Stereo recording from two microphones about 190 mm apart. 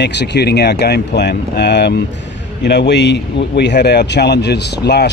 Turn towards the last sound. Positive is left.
turn(degrees=60)  # may be behind; listen again after turning